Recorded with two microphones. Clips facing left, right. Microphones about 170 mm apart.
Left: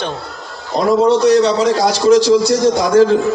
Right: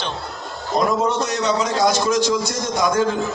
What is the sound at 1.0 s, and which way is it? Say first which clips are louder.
A man's voice: left 10 dB; 35° left (ahead or behind).